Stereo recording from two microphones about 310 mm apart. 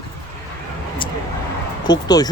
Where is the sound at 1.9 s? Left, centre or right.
Centre.